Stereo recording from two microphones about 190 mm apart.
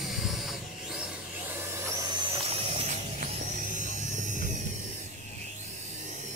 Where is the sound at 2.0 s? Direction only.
30° right (ahead or behind).